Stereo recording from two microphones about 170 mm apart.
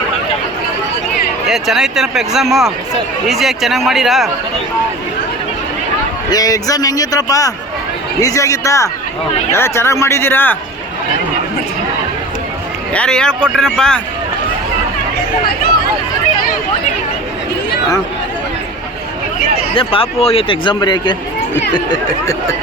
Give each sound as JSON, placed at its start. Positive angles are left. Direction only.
{"t": 1.5, "sound": "speech", "side_deg": 0}
{"t": 6.3, "sound": "a man's voice", "side_deg": 20}
{"t": 12.9, "sound": "speech", "side_deg": 5}
{"t": 19.7, "sound": "a man's voice", "side_deg": 30}